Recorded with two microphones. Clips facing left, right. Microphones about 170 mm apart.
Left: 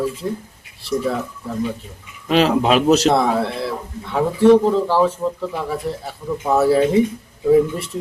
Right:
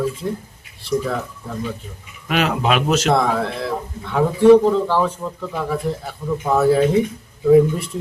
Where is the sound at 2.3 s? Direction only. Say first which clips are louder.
Left 4 dB; 30° left (ahead or behind).